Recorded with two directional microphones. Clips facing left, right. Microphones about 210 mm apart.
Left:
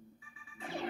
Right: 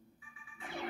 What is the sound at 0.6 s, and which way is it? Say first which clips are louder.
Music: left 3 dB; 25° left (ahead or behind).